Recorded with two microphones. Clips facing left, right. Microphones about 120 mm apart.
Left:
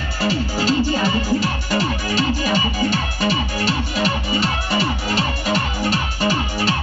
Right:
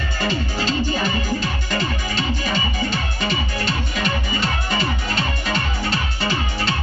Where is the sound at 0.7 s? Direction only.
5° left (ahead or behind).